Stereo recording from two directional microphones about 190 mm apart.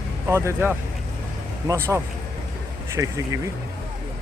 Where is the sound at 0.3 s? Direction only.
15° right (ahead or behind).